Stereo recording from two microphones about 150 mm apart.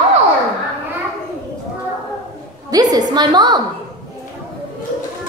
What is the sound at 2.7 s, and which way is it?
Speech, 25° right (ahead or behind).